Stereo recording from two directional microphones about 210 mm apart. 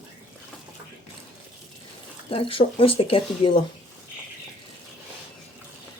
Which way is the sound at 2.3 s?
25° left (ahead or behind).